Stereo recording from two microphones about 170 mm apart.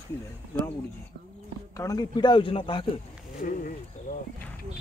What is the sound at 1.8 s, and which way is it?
Speech, 20° left (ahead or behind).